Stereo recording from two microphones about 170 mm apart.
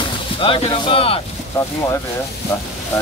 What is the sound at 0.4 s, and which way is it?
Speech, 30° left (ahead or behind).